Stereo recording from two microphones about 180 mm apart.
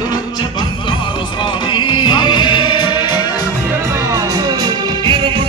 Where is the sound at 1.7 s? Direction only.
25° left (ahead or behind).